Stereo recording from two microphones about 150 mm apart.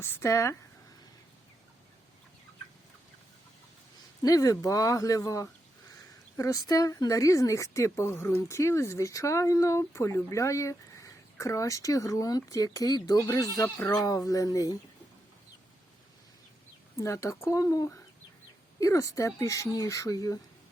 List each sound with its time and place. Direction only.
0.0 s speech: 15° left (ahead or behind)
4.2 s speech: 25° left (ahead or behind)
17.0 s speech: 20° left (ahead or behind)